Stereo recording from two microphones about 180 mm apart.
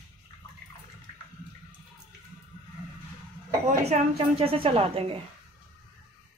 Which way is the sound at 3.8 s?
35° right (ahead or behind).